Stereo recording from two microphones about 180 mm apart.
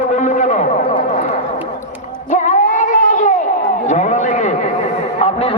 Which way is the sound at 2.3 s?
45° left (ahead or behind).